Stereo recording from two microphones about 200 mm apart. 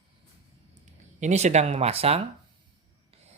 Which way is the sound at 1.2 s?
35° right (ahead or behind).